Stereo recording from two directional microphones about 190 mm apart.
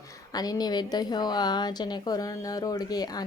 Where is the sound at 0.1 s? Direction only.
20° left (ahead or behind).